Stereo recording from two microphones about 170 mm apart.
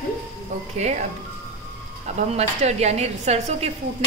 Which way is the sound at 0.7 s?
40° right (ahead or behind).